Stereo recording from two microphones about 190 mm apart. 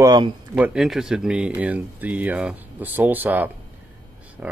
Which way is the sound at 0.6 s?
Centre (ahead or behind).